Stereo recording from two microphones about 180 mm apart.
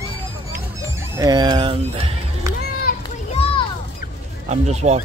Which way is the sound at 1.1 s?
20° right (ahead or behind).